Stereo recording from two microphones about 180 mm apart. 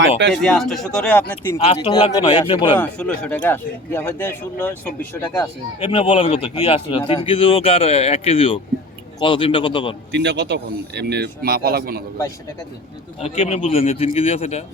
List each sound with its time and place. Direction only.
0.2 s speech: 75° right (ahead or behind)
0.4 s speech: centre (ahead or behind)
1.5 s speech: 35° left (ahead or behind)
2.7 s speech: 10° left (ahead or behind)
5.8 s speech: 30° left (ahead or behind)
10.1 s speech: 75° right (ahead or behind); by 12.0 s 55° right (ahead or behind)
13.1 s speech: 35° left (ahead or behind)